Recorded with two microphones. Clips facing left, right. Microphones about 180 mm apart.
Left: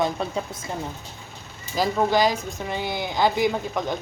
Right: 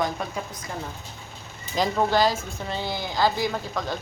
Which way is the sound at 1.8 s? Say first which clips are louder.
Left 1 dB; 5° left (ahead or behind).